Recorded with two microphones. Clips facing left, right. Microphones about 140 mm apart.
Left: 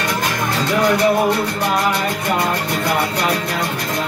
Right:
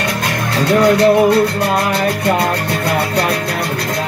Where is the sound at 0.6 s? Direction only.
65° right (ahead or behind).